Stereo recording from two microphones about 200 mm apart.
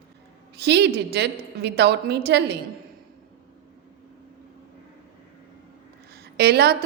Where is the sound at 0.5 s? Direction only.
55° right (ahead or behind).